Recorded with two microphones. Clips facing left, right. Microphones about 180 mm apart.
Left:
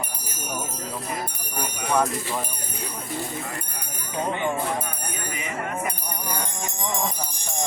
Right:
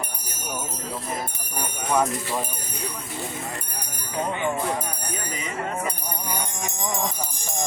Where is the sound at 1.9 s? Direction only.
5° right (ahead or behind).